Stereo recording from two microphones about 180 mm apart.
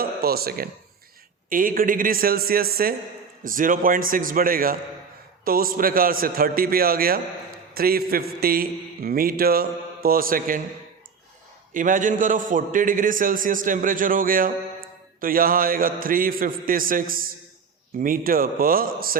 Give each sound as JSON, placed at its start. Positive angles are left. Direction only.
{"t": 0.0, "sound": "a man's voice", "side_deg": -60}
{"t": 11.7, "sound": "a man's voice", "side_deg": -45}